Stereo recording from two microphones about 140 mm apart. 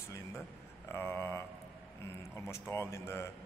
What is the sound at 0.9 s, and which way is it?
A man's voice, 15° left (ahead or behind).